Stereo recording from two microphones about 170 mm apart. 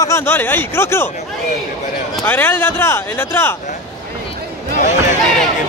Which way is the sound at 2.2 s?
10° left (ahead or behind).